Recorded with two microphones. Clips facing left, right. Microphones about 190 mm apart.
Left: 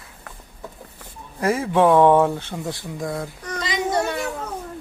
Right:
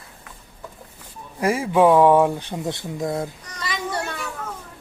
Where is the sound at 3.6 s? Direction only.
20° left (ahead or behind).